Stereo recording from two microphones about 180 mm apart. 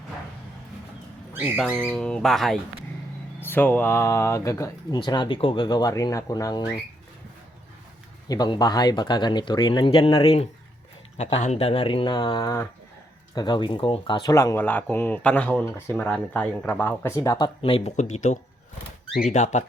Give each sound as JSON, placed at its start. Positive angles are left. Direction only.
{"t": 1.3, "sound": "a sound", "side_deg": -10}
{"t": 1.9, "sound": "speech", "side_deg": 5}
{"t": 3.4, "sound": "speech", "side_deg": 10}
{"t": 8.3, "sound": "speech", "side_deg": 20}